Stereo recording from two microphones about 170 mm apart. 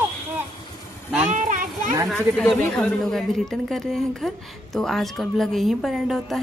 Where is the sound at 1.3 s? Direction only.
50° right (ahead or behind).